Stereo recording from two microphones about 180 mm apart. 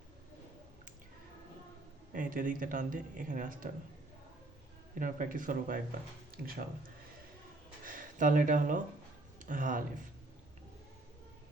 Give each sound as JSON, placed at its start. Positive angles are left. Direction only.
{"t": 2.1, "sound": "speech", "side_deg": -50}
{"t": 4.9, "sound": "speech", "side_deg": -45}
{"t": 7.9, "sound": "speech", "side_deg": -50}